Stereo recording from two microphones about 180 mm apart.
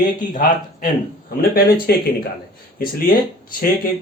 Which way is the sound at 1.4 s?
60° left (ahead or behind).